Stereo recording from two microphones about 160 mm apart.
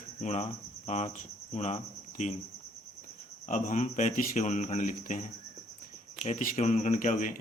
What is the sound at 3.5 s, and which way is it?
Speech, 50° left (ahead or behind).